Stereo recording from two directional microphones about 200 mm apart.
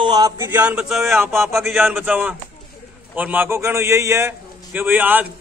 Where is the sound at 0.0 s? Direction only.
20° right (ahead or behind).